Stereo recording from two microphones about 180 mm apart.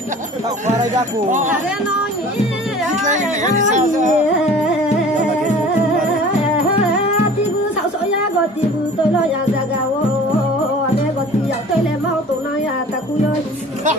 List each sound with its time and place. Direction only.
2.9 s music: 40° right (ahead or behind)